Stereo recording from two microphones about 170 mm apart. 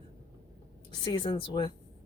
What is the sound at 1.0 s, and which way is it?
Speech, 30° left (ahead or behind).